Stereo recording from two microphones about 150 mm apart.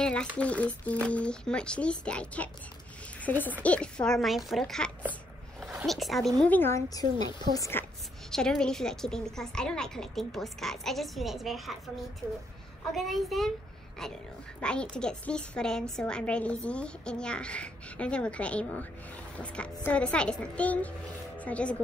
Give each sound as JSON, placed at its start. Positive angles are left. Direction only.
{"t": 0.0, "sound": "a sound", "side_deg": 5}
{"t": 0.4, "sound": "a woman's voice", "side_deg": 10}
{"t": 6.4, "sound": "a woman's voice", "side_deg": 15}
{"t": 8.3, "sound": "a child's voice", "side_deg": 5}
{"t": 12.2, "sound": "a child's voice", "side_deg": -20}
{"t": 12.9, "sound": "a child's voice", "side_deg": 0}
{"t": 14.6, "sound": "a woman's voice", "side_deg": 5}